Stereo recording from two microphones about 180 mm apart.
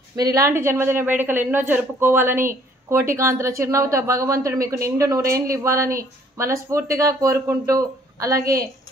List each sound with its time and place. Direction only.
0.1 s a woman's voice: 20° right (ahead or behind)